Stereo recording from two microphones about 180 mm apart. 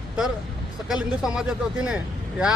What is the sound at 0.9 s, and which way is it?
Speech, 5° right (ahead or behind).